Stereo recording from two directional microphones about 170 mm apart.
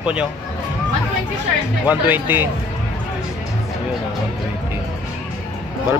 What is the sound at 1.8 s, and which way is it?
Speech, 10° right (ahead or behind).